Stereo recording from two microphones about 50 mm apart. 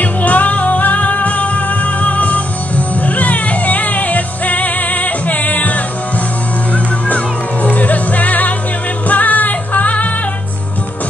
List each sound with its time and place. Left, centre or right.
0.0 s music: left